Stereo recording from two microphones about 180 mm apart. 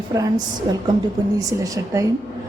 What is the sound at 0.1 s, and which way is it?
A woman's voice, 20° right (ahead or behind).